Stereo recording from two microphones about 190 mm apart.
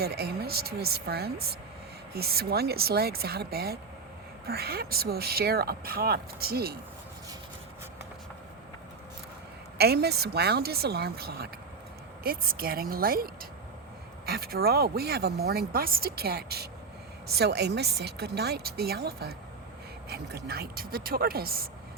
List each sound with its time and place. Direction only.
0.0 s speech: 55° right (ahead or behind)
9.7 s speech: 60° right (ahead or behind)